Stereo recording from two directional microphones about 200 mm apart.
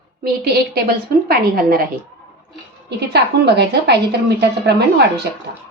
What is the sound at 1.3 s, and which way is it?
Speech, 45° right (ahead or behind).